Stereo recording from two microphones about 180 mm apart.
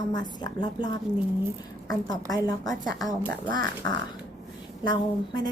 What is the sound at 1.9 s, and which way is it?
A woman's voice, 20° left (ahead or behind).